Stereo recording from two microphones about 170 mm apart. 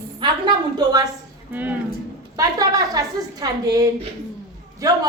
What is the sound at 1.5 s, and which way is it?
Speech, 10° right (ahead or behind).